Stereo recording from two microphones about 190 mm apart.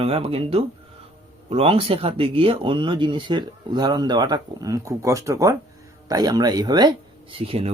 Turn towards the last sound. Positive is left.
turn(degrees=-30)  # may be behind; listen again after turning